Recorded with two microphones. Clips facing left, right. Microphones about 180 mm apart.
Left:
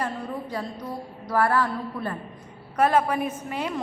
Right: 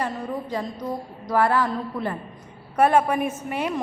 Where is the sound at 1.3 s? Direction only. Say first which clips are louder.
Right 2 dB; 20° right (ahead or behind).